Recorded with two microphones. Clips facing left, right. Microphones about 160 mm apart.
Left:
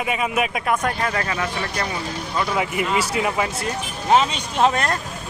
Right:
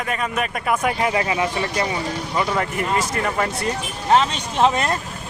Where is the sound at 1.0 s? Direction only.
15° right (ahead or behind).